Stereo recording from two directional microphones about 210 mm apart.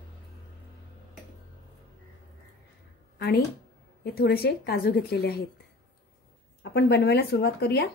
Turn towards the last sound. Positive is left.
turn(degrees=50)  # may be behind; listen again after turning